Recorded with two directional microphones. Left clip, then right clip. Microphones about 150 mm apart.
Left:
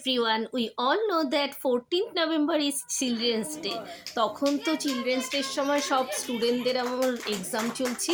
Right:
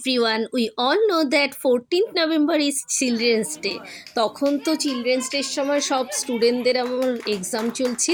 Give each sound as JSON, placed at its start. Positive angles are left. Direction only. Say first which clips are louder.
{"t": 0.0, "sound": "speech", "louder": "right 5 dB", "side_deg": -40}